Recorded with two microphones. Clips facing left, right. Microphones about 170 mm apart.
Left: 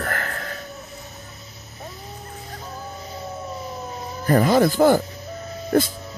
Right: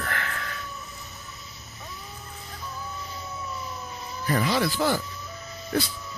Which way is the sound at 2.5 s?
45° left (ahead or behind).